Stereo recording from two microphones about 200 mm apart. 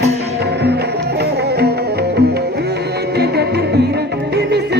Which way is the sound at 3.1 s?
55° right (ahead or behind).